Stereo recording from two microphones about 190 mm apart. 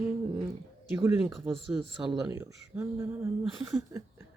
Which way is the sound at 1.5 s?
Centre (ahead or behind).